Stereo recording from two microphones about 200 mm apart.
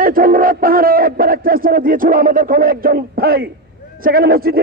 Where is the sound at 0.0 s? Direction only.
45° right (ahead or behind).